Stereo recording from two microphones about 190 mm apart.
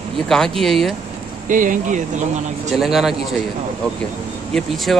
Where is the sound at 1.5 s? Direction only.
45° right (ahead or behind).